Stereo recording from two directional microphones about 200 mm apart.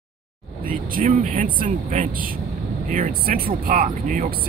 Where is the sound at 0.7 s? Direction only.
45° right (ahead or behind).